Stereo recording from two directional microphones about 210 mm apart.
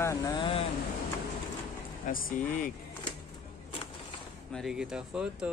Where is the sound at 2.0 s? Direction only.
40° left (ahead or behind).